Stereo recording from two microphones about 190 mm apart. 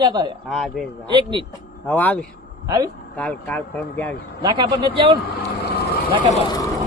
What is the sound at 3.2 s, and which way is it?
Speech, 10° left (ahead or behind).